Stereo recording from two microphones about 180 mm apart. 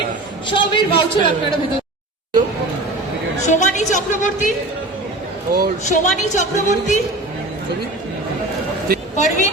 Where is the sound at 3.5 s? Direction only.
40° left (ahead or behind).